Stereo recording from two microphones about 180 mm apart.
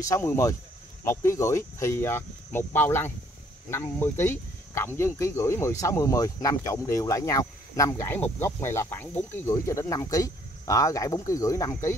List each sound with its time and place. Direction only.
0.0 s speech: 15° left (ahead or behind)